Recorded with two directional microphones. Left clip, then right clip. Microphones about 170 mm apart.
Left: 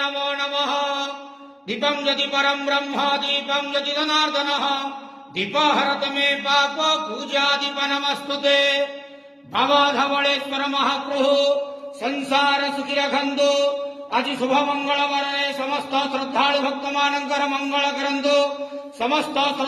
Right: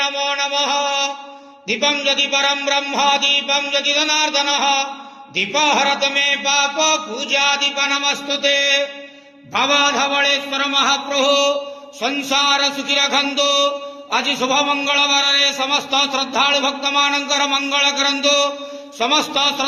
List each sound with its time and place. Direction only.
0.0 s mantra: centre (ahead or behind)
1.6 s a man's voice: 5° right (ahead or behind)
7.8 s a sound: centre (ahead or behind)
12.0 s a man's voice: 15° right (ahead or behind)